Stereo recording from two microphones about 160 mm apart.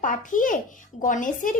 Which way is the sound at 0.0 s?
55° left (ahead or behind).